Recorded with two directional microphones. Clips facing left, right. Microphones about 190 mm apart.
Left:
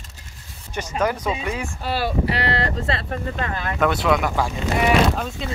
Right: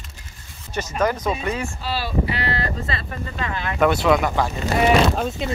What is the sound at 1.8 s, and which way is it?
Speech, 55° left (ahead or behind).